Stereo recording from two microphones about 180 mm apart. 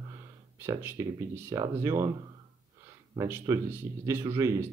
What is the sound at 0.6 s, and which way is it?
Speech, 15° right (ahead or behind).